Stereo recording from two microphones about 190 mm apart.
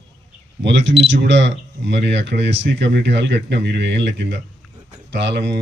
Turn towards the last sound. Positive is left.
turn(degrees=-65)  # may be behind; listen again after turning